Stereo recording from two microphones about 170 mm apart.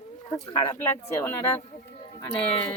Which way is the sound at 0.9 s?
15° left (ahead or behind).